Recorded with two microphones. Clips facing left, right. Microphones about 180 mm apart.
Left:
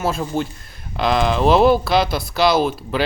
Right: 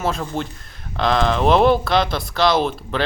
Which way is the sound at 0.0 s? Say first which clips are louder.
Left 2 dB; 10° left (ahead or behind).